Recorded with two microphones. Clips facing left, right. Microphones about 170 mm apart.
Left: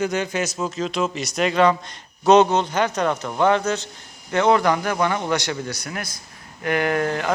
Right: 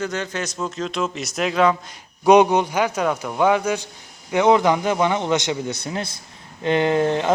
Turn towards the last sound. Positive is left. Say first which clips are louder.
# right 3 dB
turn(degrees=-20)  # may be behind; listen again after turning